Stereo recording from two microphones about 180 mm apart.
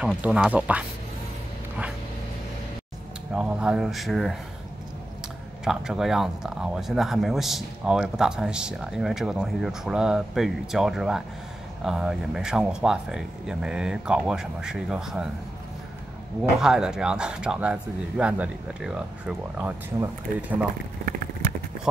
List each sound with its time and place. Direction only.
0.0 s speech: 5° right (ahead or behind)
3.3 s speech: 5° right (ahead or behind)
5.6 s speech: centre (ahead or behind)
16.5 s speech: 5° right (ahead or behind)
19.9 s speech: 20° right (ahead or behind)
21.0 s vehicle: 55° right (ahead or behind)